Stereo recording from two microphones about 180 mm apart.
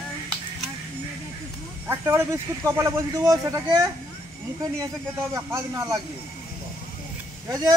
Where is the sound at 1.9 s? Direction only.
10° right (ahead or behind).